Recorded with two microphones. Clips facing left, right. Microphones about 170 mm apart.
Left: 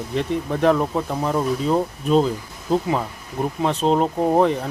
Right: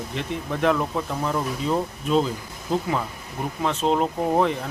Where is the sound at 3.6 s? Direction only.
40° left (ahead or behind).